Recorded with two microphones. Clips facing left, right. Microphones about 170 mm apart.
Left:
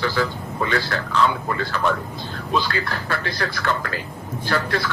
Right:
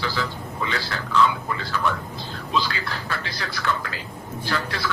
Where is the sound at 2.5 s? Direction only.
50° left (ahead or behind).